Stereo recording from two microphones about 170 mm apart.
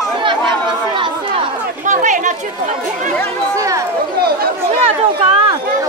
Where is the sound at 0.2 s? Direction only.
30° right (ahead or behind).